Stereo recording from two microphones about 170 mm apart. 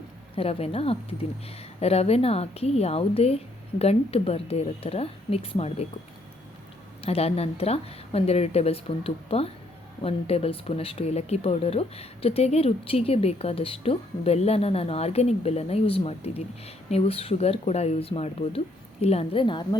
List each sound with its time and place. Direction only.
0.3 s speech: 35° left (ahead or behind)
7.0 s speech: 35° left (ahead or behind)